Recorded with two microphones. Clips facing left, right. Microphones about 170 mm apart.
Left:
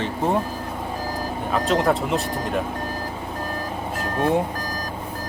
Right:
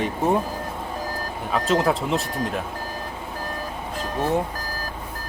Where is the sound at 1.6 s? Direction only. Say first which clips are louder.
Even; centre (ahead or behind).